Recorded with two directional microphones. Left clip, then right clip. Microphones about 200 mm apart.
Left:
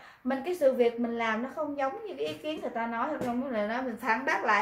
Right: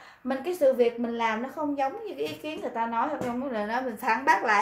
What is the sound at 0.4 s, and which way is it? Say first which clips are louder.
A woman's voice: right 3 dB; 30° right (ahead or behind).